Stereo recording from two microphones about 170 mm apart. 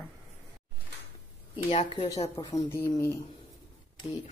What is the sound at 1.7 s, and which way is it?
Speech, 35° left (ahead or behind).